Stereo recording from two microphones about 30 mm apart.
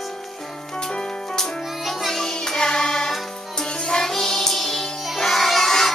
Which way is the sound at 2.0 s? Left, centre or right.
Centre.